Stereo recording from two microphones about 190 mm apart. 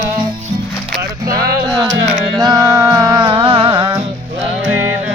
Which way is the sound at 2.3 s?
20° right (ahead or behind).